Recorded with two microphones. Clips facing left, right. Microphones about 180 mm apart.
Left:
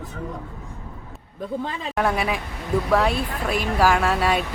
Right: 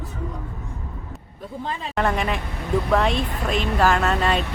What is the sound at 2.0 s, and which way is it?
A woman's voice, 5° left (ahead or behind).